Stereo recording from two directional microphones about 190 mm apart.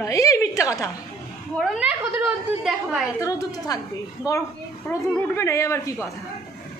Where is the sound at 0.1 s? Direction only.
15° left (ahead or behind).